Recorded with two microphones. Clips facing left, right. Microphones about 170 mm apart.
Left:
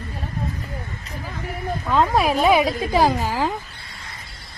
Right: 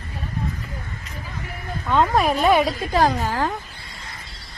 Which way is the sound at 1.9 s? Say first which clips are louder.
Even; centre (ahead or behind).